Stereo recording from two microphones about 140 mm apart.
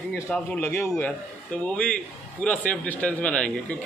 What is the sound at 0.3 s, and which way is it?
Speech, 10° left (ahead or behind).